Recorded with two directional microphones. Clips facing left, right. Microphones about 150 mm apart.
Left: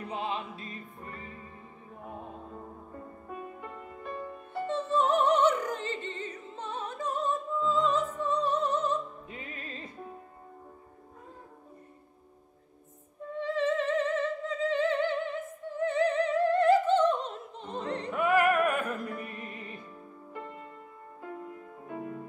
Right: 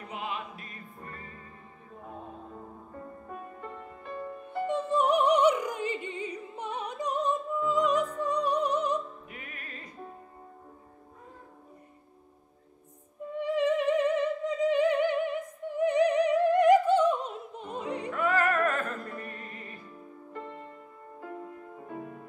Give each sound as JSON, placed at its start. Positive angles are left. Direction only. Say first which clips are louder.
{"t": 0.1, "sound": "music", "louder": "left 2 dB", "side_deg": 30}
{"t": 4.6, "sound": "opera", "louder": "right 1 dB", "side_deg": -15}
{"t": 8.2, "sound": "music", "louder": "right 1 dB", "side_deg": -15}
{"t": 9.3, "sound": "music", "louder": "left 3 dB", "side_deg": 25}
{"t": 13.4, "sound": "opera", "louder": "right 2 dB", "side_deg": -15}
{"t": 18.1, "sound": "music", "louder": "left 3 dB", "side_deg": 15}